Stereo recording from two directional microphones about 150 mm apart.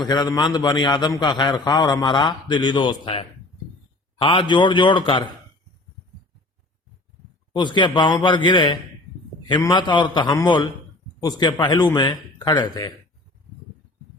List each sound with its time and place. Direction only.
0.0 s a man's voice: 30° left (ahead or behind)
7.5 s a man's voice: 30° left (ahead or behind)